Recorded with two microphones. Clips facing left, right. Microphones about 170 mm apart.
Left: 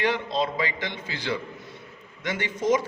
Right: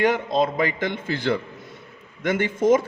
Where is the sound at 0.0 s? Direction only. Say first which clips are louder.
Right 5 dB; 50° right (ahead or behind).